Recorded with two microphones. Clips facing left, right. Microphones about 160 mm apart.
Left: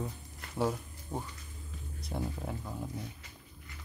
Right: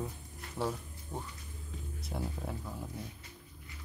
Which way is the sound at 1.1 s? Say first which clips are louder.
Left 3 dB; 20° left (ahead or behind).